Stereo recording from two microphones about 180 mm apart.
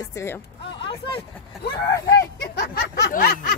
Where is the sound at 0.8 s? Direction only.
30° left (ahead or behind).